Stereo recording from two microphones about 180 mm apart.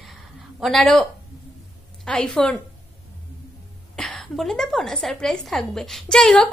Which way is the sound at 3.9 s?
5° left (ahead or behind).